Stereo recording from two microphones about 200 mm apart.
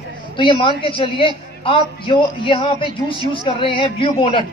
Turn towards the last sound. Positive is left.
turn(degrees=25)  # may be behind; listen again after turning